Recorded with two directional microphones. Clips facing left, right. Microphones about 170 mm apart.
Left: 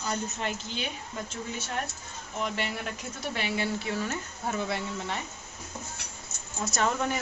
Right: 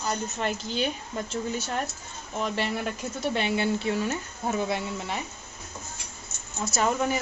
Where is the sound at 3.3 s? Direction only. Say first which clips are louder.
Right 4 dB; 25° right (ahead or behind).